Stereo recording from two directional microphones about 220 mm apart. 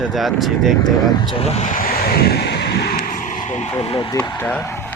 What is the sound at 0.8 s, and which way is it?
Speech, 20° left (ahead or behind).